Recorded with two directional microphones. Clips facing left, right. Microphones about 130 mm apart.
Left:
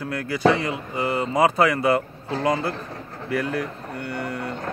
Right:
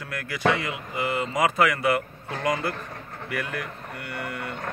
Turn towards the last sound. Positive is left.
turn(degrees=30)  # may be behind; listen again after turning